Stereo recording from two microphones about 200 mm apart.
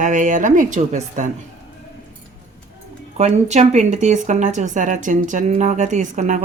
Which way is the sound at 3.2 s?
35° right (ahead or behind).